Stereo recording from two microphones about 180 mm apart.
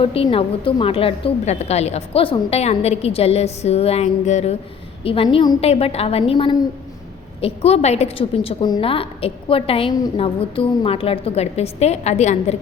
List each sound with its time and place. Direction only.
0.0 s a woman's voice: 30° left (ahead or behind)